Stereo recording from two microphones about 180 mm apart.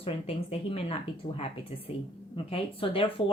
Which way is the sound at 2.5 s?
30° left (ahead or behind).